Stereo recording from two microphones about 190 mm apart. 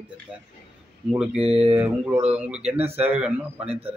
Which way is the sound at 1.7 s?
5° right (ahead or behind).